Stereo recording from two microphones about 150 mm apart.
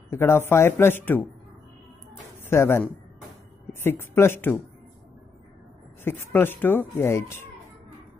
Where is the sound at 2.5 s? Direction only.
15° left (ahead or behind).